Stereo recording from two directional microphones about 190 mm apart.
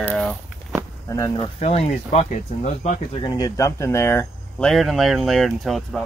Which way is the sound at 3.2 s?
20° left (ahead or behind).